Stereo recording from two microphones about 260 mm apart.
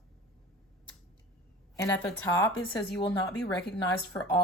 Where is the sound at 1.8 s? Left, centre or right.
Centre.